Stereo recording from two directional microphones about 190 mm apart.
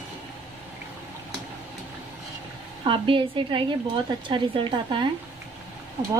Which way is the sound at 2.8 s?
25° right (ahead or behind).